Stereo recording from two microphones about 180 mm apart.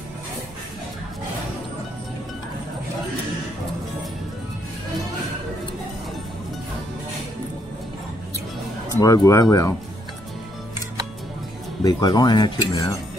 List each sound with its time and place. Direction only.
9.0 s speech: 20° left (ahead or behind)
11.8 s speech: 20° left (ahead or behind)